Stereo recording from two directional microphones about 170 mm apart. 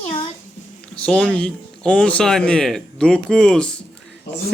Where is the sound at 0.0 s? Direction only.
35° left (ahead or behind).